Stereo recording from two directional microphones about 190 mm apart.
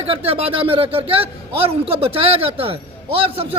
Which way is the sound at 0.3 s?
30° right (ahead or behind).